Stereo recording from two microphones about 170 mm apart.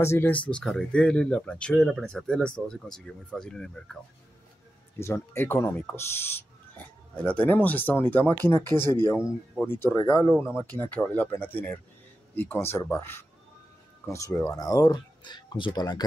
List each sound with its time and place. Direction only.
0.0 s speech: 15° left (ahead or behind)
4.9 s speech: 15° left (ahead or behind)
7.4 s speech: 10° left (ahead or behind)